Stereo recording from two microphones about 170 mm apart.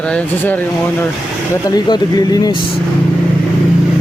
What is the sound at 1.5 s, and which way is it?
Speech, 25° left (ahead or behind).